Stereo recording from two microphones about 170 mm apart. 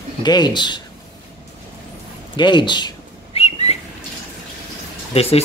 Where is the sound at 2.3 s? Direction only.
25° left (ahead or behind).